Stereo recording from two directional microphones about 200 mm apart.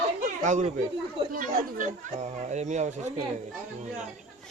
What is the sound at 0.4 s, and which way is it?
Speech, 40° right (ahead or behind).